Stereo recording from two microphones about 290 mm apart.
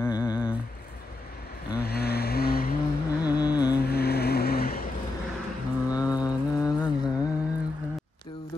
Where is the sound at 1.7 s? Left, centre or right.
Left.